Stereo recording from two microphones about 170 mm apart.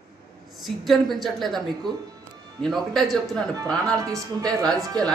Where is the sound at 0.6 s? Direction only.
Centre (ahead or behind).